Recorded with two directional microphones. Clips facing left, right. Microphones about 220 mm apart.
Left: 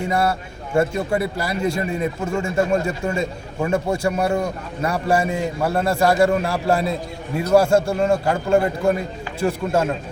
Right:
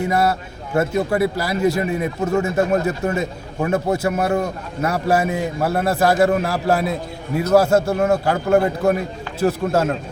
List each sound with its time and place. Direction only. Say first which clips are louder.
0.8 s a man's voice: right 2 dB; 5° right (ahead or behind)